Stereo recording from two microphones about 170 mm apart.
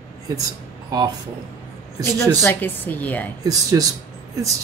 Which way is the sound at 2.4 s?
10° left (ahead or behind).